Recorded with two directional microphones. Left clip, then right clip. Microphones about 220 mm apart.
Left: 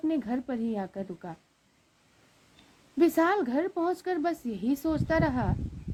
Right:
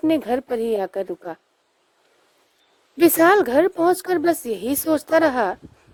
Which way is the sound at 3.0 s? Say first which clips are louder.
Right 10 dB; 45° right (ahead or behind).